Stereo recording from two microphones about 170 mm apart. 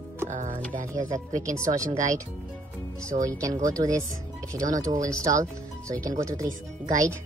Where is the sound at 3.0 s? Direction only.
20° right (ahead or behind).